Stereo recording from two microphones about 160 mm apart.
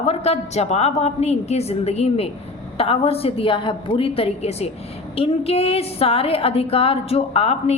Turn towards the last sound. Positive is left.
turn(degrees=40)  # may be behind; listen again after turning